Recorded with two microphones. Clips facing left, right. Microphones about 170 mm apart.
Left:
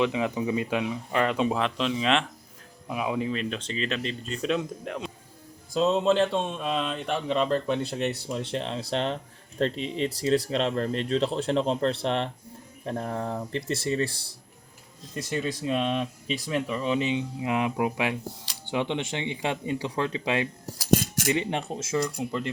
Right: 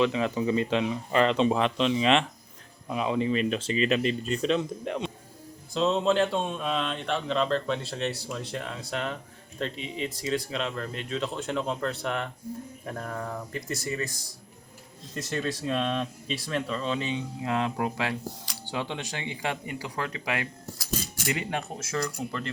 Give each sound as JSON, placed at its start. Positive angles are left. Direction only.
{"t": 0.0, "sound": "speech", "side_deg": 15}
{"t": 15.1, "sound": "speech", "side_deg": 10}